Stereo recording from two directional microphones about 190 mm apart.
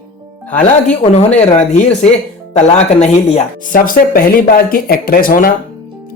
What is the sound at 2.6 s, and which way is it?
Speech, 35° left (ahead or behind).